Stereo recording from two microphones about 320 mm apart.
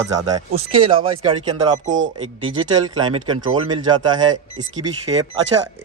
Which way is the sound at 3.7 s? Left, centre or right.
Centre.